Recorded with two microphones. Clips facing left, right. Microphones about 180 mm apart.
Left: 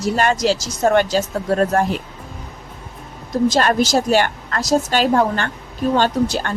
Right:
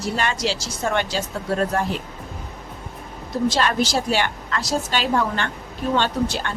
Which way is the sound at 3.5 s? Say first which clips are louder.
Left 4 dB; 45° left (ahead or behind).